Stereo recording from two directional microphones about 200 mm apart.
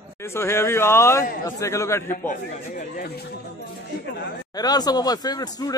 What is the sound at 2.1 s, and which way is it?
Speech, 40° left (ahead or behind).